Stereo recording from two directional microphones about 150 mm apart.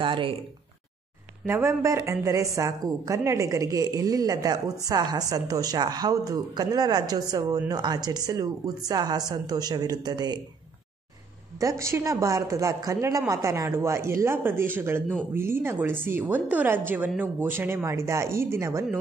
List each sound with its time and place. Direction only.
0.0 s speech: 35° right (ahead or behind)
1.4 s a woman's voice: 15° right (ahead or behind)
11.6 s a woman's voice: 20° right (ahead or behind)